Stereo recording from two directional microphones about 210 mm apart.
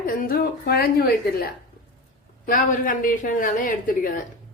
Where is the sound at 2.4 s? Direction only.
40° left (ahead or behind).